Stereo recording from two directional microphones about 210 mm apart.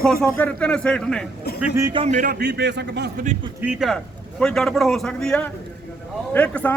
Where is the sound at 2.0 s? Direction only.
35° right (ahead or behind); by 3.3 s 50° right (ahead or behind).